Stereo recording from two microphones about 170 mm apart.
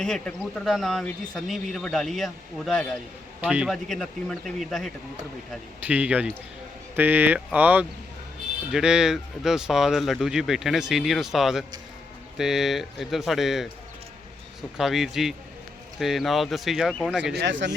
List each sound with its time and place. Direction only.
0.0 s speech: 5° left (ahead or behind)
5.9 s speech: 10° right (ahead or behind)
14.8 s speech: centre (ahead or behind)
17.3 s speech: 90° right